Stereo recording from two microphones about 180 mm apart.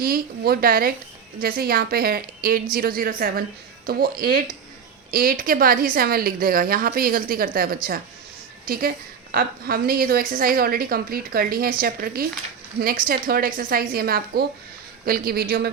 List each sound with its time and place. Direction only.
0.0 s a woman's voice: 55° right (ahead or behind)